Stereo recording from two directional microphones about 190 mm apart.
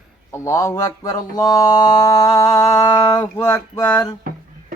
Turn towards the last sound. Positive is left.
turn(degrees=15)  # may be behind; listen again after turning